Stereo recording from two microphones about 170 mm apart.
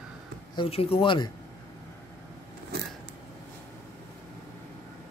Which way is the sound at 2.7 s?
70° right (ahead or behind).